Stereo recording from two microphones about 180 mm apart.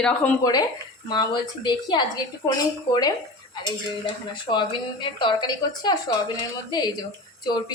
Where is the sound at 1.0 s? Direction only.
25° left (ahead or behind).